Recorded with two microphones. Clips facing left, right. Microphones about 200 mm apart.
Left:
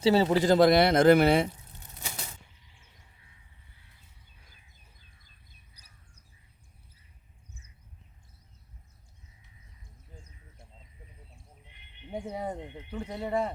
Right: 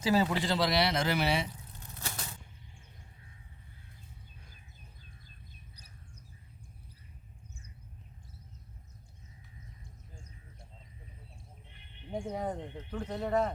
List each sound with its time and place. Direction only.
0.0 s speech: 30° left (ahead or behind); by 1.5 s 55° left (ahead or behind)
2.0 s typewriter: 15° left (ahead or behind)
12.3 s speech: 10° left (ahead or behind)